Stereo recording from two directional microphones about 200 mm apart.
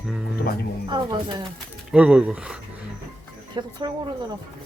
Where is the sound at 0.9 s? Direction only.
20° right (ahead or behind).